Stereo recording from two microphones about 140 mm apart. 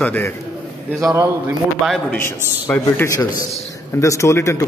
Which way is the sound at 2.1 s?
15° left (ahead or behind).